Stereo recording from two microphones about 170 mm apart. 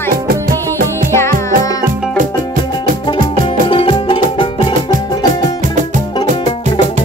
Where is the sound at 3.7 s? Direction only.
30° left (ahead or behind).